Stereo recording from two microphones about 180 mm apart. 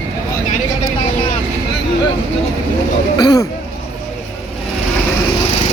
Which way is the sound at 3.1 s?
25° left (ahead or behind).